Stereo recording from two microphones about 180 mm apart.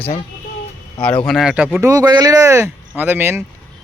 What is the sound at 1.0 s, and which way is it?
Speech, 5° left (ahead or behind).